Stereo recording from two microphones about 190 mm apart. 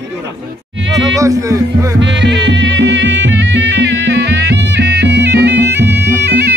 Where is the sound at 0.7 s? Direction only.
75° right (ahead or behind).